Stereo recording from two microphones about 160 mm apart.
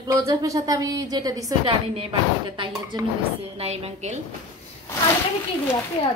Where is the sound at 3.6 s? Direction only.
40° right (ahead or behind).